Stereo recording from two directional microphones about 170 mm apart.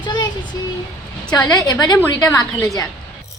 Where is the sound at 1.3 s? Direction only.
20° left (ahead or behind).